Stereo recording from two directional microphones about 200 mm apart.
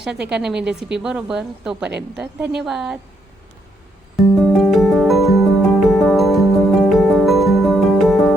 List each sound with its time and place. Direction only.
0.0 s speech: 5° right (ahead or behind)
4.4 s music: centre (ahead or behind)